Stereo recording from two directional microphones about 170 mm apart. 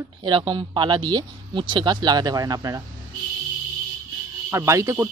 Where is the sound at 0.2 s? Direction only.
30° right (ahead or behind).